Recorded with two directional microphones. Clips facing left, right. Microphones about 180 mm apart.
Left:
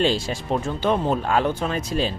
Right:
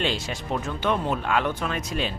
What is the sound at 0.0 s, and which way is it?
Speech, 35° left (ahead or behind).